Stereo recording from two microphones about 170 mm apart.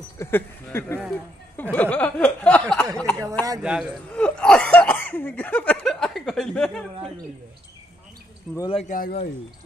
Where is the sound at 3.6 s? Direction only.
5° right (ahead or behind).